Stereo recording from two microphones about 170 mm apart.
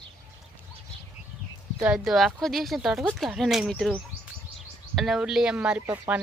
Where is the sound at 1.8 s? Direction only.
Centre (ahead or behind).